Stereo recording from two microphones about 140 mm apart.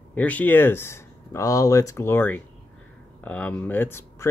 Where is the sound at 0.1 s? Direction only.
10° left (ahead or behind).